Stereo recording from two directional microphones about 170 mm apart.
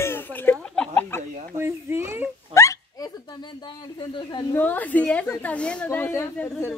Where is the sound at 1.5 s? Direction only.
15° right (ahead or behind).